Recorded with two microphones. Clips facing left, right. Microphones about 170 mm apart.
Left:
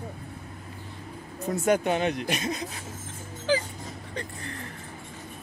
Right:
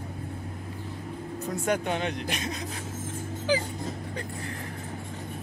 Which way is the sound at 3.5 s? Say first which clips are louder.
Left 1 dB; 15° right (ahead or behind).